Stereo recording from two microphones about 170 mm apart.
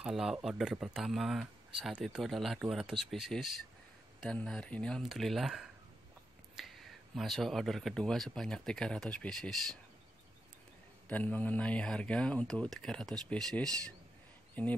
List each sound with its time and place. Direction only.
0.0 s speech: 5° right (ahead or behind)
11.1 s speech: 10° left (ahead or behind)